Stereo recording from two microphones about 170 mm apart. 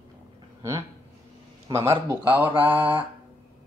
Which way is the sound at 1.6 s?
15° right (ahead or behind).